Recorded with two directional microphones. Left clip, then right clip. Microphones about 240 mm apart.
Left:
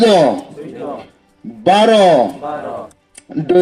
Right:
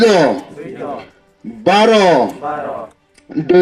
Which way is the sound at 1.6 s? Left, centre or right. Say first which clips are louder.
Left 1 dB; left.